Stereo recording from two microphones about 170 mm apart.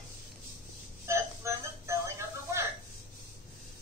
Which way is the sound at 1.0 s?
15° right (ahead or behind).